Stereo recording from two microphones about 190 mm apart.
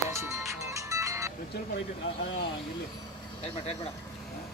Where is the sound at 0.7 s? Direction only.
15° right (ahead or behind).